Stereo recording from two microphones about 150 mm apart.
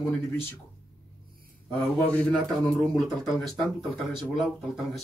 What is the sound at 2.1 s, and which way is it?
Speech, 10° left (ahead or behind).